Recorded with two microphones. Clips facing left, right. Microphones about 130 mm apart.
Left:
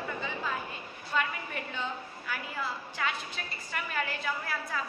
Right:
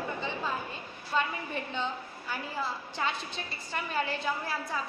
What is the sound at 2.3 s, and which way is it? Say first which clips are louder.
A woman's voice: right 2 dB; 25° right (ahead or behind).